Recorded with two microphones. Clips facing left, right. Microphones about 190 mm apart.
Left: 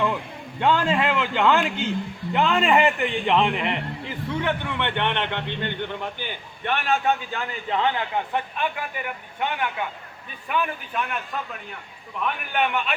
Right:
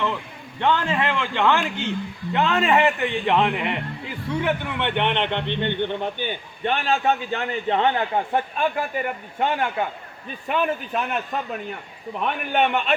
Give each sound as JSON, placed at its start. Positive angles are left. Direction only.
{"t": 0.6, "sound": "a man's voice", "side_deg": 10}